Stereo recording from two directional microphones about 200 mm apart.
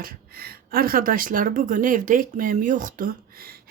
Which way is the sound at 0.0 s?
50° right (ahead or behind).